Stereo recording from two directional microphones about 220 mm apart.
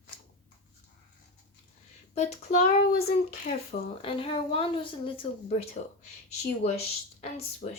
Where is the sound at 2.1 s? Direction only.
30° left (ahead or behind).